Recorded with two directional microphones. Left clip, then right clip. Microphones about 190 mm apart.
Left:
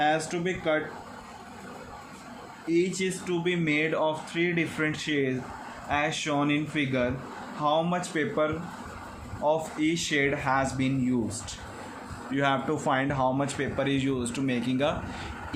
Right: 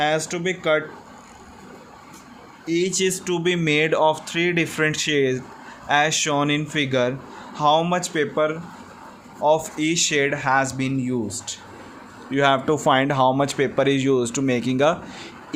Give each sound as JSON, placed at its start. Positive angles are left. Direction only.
{"t": 0.0, "sound": "speech", "side_deg": -65}
{"t": 2.6, "sound": "speech", "side_deg": -60}